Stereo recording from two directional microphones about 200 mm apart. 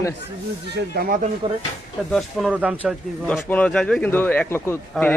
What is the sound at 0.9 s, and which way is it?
Speech, 45° right (ahead or behind).